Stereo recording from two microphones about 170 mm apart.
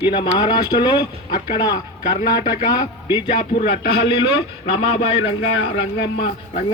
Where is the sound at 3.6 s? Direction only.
70° left (ahead or behind).